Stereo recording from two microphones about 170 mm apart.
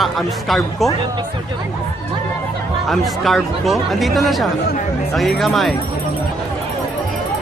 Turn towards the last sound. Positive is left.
turn(degrees=0)  # may be behind; listen again after turning